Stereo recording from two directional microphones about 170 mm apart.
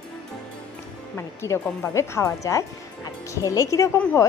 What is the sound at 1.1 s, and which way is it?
A woman's voice, 15° left (ahead or behind).